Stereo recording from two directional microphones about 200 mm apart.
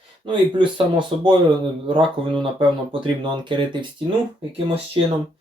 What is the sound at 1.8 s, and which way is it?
Speech, 25° right (ahead or behind).